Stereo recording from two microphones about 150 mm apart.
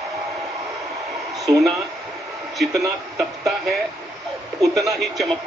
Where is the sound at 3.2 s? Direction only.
Centre (ahead or behind).